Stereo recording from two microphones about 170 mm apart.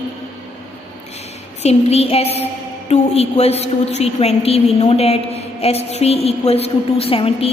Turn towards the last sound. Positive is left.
turn(degrees=35)  # may be behind; listen again after turning